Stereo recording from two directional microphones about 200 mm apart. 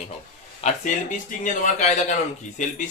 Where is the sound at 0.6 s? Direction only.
40° left (ahead or behind).